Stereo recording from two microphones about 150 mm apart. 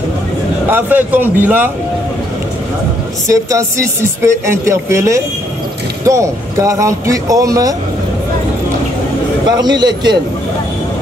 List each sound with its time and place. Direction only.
0.7 s speech: 15° right (ahead or behind)
3.3 s speech: 20° right (ahead or behind)
9.5 s speech: 30° right (ahead or behind)